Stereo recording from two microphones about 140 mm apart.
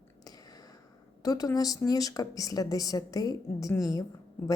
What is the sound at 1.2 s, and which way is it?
A woman's voice, 25° left (ahead or behind).